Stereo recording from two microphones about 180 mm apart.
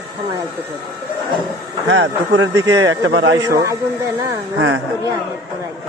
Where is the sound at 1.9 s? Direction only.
90° right.